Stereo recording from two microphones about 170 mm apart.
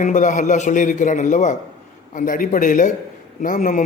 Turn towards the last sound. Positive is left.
turn(degrees=50)  # may be behind; listen again after turning